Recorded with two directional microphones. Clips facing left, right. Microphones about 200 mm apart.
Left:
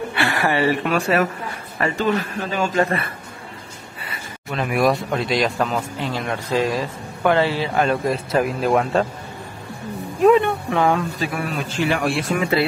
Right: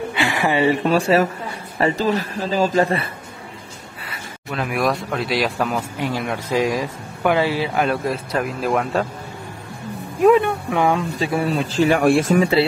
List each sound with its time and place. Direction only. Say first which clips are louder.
0.1 s a sound: right 1 dB; 15° right (ahead or behind)
0.8 s a man's voice: right 3 dB; 30° right (ahead or behind)
4.0 s a sound: left 1 dB; centre (ahead or behind)
5.1 s a man's voice: left 1 dB; 5° right (ahead or behind)
10.2 s speech: even; 5° right (ahead or behind); by 12.4 s 45° right (ahead or behind)
12.4 s speech: right 4 dB; 30° right (ahead or behind)